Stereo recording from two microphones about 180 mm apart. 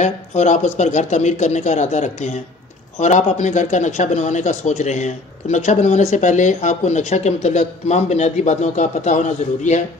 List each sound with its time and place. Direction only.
0.0 s a man's voice: 40° left (ahead or behind)